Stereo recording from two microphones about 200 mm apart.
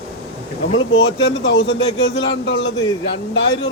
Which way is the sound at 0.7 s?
65° left (ahead or behind).